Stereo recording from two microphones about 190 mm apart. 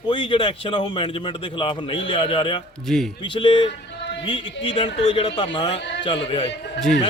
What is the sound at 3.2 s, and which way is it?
A man's voice, 25° left (ahead or behind).